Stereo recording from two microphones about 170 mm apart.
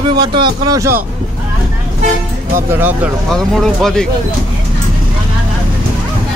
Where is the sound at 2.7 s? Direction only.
10° right (ahead or behind).